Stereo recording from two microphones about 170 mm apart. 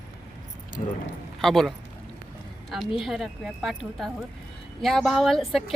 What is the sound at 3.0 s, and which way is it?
Speech, centre (ahead or behind).